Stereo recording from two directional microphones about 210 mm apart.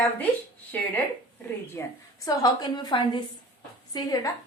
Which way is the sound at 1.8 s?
10° left (ahead or behind).